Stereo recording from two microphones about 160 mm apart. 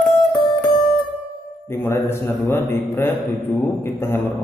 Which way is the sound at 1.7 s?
15° left (ahead or behind).